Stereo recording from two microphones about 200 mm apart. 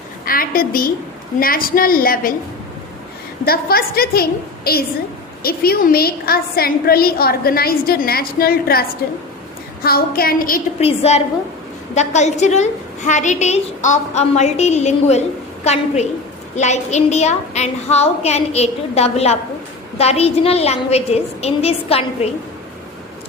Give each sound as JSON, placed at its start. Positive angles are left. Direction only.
{"t": 0.3, "sound": "a woman's voice", "side_deg": 45}
{"t": 3.4, "sound": "a woman's voice", "side_deg": 50}
{"t": 10.8, "sound": "a woman's voice", "side_deg": 30}